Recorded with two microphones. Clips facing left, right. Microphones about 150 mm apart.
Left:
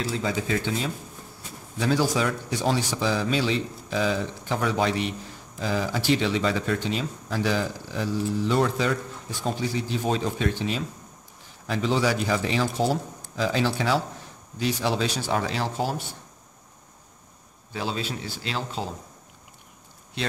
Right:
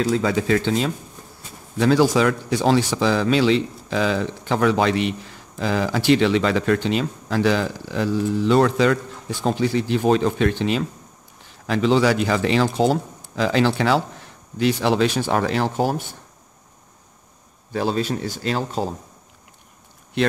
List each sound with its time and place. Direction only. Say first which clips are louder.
0.1 s speech: right 7 dB; 65° right (ahead or behind)
17.7 s speech: right 8 dB; 45° right (ahead or behind)